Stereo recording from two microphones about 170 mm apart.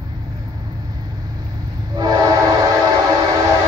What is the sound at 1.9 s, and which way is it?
Train, 25° right (ahead or behind).